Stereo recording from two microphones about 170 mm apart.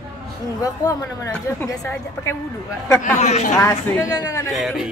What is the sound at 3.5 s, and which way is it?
Speech, 15° left (ahead or behind).